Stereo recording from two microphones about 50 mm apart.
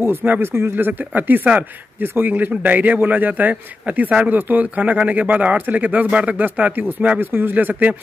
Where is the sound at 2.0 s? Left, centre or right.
Right.